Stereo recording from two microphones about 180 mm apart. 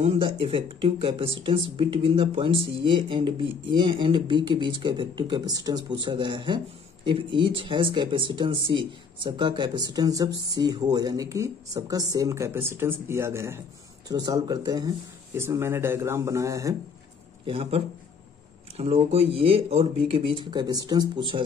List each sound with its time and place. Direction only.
0.0 s speech: 30° right (ahead or behind)
17.5 s speech: 35° right (ahead or behind)